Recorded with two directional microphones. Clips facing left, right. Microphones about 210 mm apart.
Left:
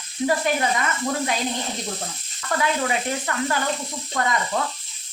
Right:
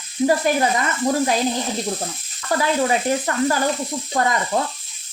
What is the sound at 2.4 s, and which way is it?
Speech, 35° right (ahead or behind).